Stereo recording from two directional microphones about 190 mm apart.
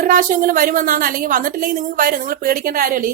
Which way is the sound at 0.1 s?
45° right (ahead or behind).